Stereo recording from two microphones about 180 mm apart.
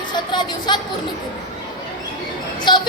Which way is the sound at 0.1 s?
25° left (ahead or behind).